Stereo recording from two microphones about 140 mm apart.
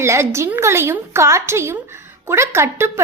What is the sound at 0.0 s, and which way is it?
A woman's voice, 20° right (ahead or behind).